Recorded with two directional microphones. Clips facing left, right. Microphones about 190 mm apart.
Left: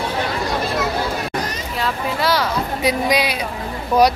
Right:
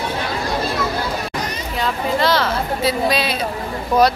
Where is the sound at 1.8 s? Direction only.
10° left (ahead or behind).